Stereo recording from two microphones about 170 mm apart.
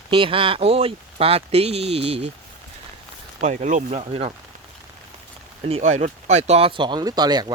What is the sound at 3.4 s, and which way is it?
Speech, 45° right (ahead or behind).